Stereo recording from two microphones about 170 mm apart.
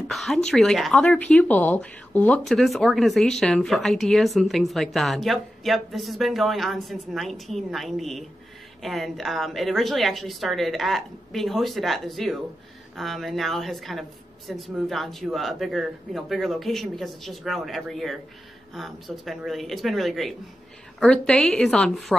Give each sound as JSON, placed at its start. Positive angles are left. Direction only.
{"t": 0.1, "sound": "speech", "side_deg": 0}